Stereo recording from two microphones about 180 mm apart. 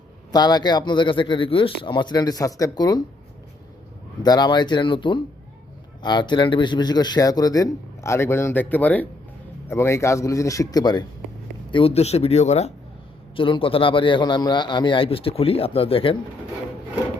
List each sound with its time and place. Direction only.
0.3 s speech: 20° left (ahead or behind)
4.2 s a man's voice: 25° left (ahead or behind)